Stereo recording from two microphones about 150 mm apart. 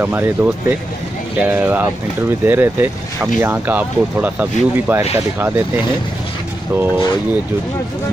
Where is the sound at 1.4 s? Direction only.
10° right (ahead or behind).